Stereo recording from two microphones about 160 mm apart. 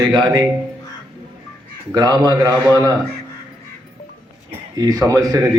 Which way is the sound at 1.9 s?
25° right (ahead or behind).